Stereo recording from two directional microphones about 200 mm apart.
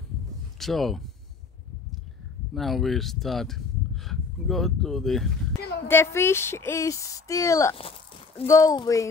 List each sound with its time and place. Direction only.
0.6 s speech: centre (ahead or behind)
2.5 s speech: centre (ahead or behind)
5.9 s speech: 10° left (ahead or behind)
7.7 s a sound: 30° left (ahead or behind)
8.5 s speech: 15° left (ahead or behind)